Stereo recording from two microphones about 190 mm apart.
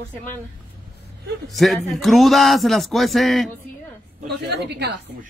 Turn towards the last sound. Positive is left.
turn(degrees=-60)  # may be behind; listen again after turning